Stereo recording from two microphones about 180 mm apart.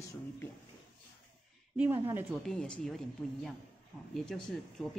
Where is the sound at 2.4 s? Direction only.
5° left (ahead or behind).